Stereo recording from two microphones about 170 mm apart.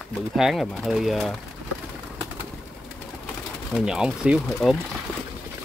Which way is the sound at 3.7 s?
5° right (ahead or behind).